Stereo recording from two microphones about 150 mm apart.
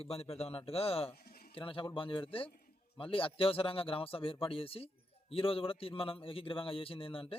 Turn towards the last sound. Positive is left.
turn(degrees=40)  # may be behind; listen again after turning